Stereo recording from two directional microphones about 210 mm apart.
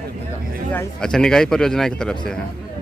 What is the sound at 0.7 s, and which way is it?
Speech, 5° left (ahead or behind).